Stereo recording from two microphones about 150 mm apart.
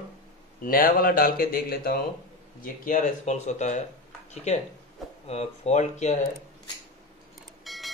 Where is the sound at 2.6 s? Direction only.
60° left (ahead or behind).